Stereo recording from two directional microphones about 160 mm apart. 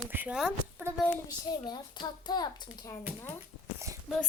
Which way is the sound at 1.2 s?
25° left (ahead or behind).